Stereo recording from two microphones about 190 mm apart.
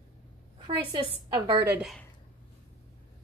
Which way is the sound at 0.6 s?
20° right (ahead or behind).